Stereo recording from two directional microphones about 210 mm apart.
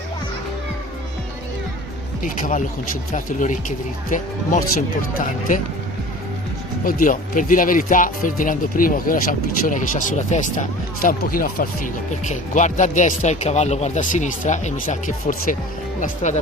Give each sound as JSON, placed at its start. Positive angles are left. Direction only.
{"t": 2.2, "sound": "speech", "side_deg": 40}
{"t": 6.8, "sound": "speech", "side_deg": 40}